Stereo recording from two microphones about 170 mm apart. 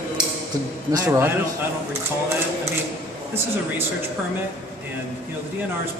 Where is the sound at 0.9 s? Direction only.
20° right (ahead or behind).